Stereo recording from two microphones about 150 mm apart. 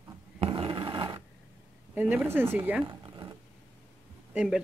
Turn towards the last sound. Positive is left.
turn(degrees=-10)  # may be behind; listen again after turning